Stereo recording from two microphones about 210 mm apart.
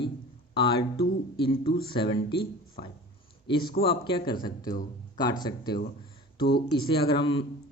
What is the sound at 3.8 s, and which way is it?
Speech, 25° left (ahead or behind).